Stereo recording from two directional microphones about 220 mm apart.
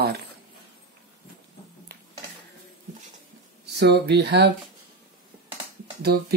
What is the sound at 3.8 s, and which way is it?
Speech, 50° right (ahead or behind).